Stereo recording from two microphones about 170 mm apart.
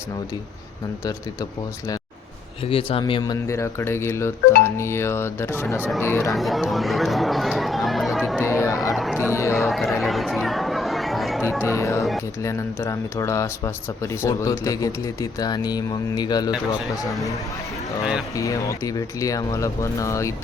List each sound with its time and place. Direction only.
2.6 s speech: 35° left (ahead or behind); by 6.3 s 15° left (ahead or behind)
6.3 s speech: centre (ahead or behind)
8.4 s chatter: 15° left (ahead or behind)
9.0 s a sound: 5° right (ahead or behind)
9.3 s a sound: 15° left (ahead or behind)
9.6 s a sound: centre (ahead or behind)
10.0 s chatter: centre (ahead or behind)
11.6 s speech: 15° left (ahead or behind)
17.1 s speech: centre (ahead or behind)
18.3 s speech: 20° left (ahead or behind)